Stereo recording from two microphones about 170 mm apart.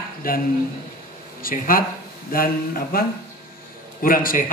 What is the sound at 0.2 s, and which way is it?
A man's voice, 60° left (ahead or behind).